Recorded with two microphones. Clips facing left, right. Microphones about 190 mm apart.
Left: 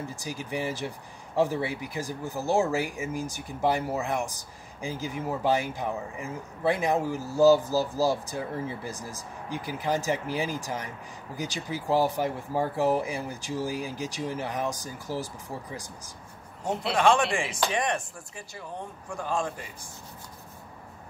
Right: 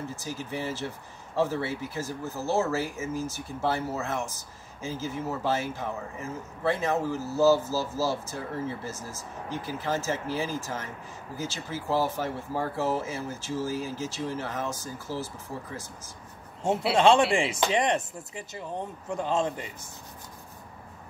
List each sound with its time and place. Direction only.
0.1 s speech: 15° left (ahead or behind)
16.9 s chopping: 25° right (ahead or behind)